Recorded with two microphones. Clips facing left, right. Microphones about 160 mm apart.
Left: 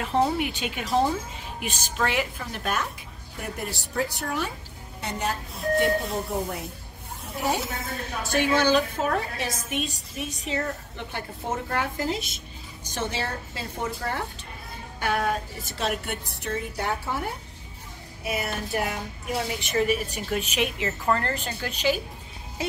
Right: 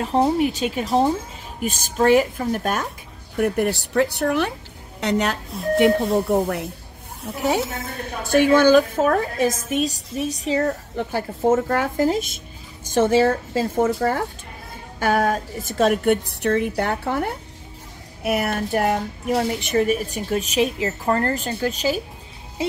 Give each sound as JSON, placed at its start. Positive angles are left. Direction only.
{"t": 0.0, "sound": "a woman's voice", "side_deg": -35}
{"t": 1.6, "sound": "a woman's voice", "side_deg": -45}
{"t": 3.3, "sound": "a woman's voice", "side_deg": -60}
{"t": 8.2, "sound": "a woman's voice", "side_deg": -55}
{"t": 18.2, "sound": "a woman's voice", "side_deg": -60}